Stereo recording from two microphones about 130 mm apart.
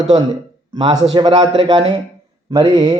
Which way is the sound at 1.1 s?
35° right (ahead or behind).